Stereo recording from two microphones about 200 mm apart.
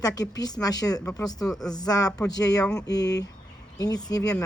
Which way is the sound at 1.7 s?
20° left (ahead or behind).